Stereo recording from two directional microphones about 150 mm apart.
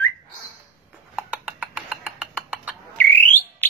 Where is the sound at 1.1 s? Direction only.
5° right (ahead or behind).